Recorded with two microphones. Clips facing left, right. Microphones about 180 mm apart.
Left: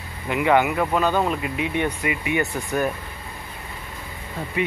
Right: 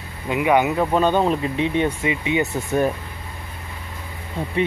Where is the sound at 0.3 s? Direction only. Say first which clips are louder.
Right 1 dB; 15° right (ahead or behind).